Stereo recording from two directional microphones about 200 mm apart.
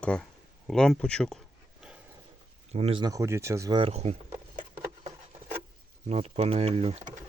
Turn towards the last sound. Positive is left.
turn(degrees=-30)  # may be behind; listen again after turning